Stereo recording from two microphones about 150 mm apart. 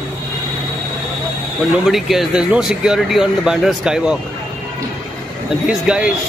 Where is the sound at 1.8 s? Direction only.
Centre (ahead or behind).